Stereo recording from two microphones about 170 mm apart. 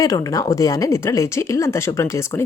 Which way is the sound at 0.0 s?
20° left (ahead or behind).